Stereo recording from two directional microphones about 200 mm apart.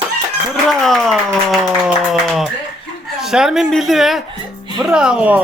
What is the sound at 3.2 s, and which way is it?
Speech, centre (ahead or behind).